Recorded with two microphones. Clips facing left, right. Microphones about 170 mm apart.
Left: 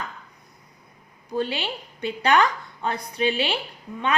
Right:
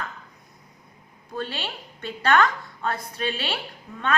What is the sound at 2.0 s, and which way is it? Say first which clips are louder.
A woman's voice: left 1 dB; 15° left (ahead or behind).